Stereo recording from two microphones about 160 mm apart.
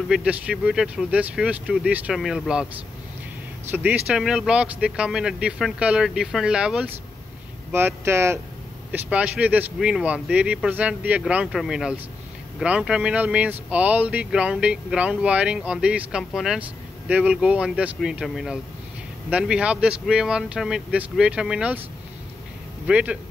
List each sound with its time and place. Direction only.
0.1 s speech: 5° right (ahead or behind)
3.7 s speech: 10° right (ahead or behind)
22.8 s speech: 5° right (ahead or behind)